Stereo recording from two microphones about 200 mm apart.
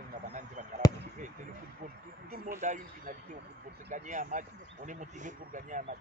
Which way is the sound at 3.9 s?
40° right (ahead or behind).